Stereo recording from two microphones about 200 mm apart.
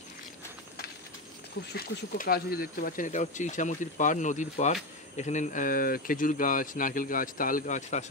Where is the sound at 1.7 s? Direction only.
45° left (ahead or behind).